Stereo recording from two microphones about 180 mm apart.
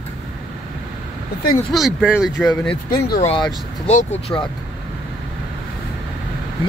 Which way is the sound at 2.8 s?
55° left (ahead or behind).